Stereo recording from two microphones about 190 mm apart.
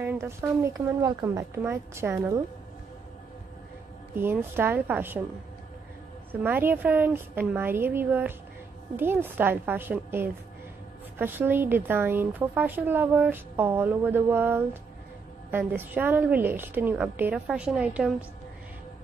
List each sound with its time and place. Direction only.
0.0 s a woman's voice: 10° right (ahead or behind)
4.2 s a woman's voice: 10° right (ahead or behind)
6.4 s a woman's voice: 10° right (ahead or behind)